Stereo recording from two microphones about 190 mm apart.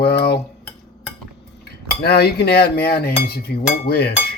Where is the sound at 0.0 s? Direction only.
55° left (ahead or behind).